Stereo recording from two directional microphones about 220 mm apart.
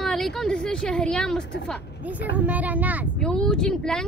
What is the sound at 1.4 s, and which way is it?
Speech, 50° left (ahead or behind).